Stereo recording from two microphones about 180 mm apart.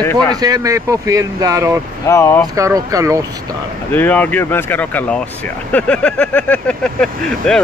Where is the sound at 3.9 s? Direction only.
10° left (ahead or behind).